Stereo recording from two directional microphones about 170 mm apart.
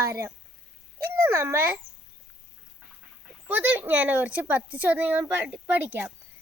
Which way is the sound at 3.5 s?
10° right (ahead or behind).